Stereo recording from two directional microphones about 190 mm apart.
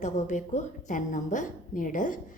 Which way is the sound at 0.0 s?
40° left (ahead or behind).